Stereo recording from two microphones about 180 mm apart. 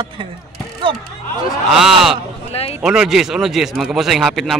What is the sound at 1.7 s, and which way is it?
Speech, centre (ahead or behind).